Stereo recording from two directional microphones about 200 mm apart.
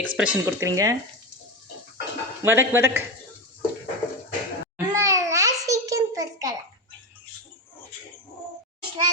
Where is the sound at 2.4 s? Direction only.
10° right (ahead or behind).